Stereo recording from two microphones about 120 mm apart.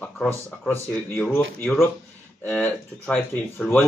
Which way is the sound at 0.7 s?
15° left (ahead or behind).